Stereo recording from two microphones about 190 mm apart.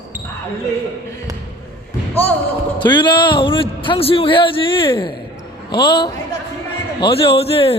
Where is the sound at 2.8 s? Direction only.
25° left (ahead or behind).